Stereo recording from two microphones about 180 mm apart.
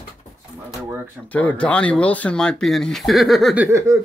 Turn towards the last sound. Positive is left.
turn(degrees=-15)  # may be behind; listen again after turning